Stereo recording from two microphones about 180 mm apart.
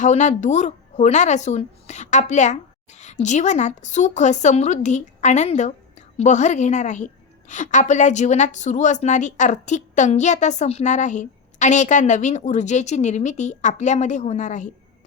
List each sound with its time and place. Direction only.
0.0 s a woman's voice: 40° left (ahead or behind)